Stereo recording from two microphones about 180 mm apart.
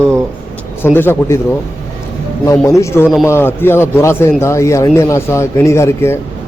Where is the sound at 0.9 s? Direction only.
10° left (ahead or behind).